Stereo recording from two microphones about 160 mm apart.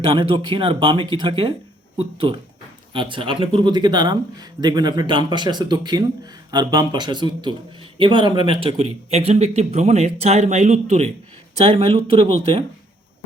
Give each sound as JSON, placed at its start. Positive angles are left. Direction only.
{"t": 0.0, "sound": "speech", "side_deg": -30}